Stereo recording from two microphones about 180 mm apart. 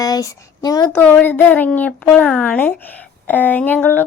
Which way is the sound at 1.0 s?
10° left (ahead or behind).